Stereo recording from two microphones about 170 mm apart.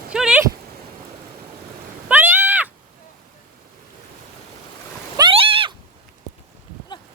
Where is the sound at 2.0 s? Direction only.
10° right (ahead or behind).